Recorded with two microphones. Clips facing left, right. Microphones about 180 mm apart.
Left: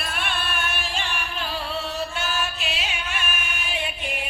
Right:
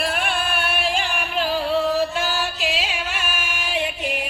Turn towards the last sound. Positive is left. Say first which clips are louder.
# right 3 dB
turn(degrees=-90)